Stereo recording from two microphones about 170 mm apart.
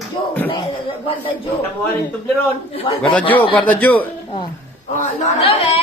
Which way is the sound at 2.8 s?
30° left (ahead or behind).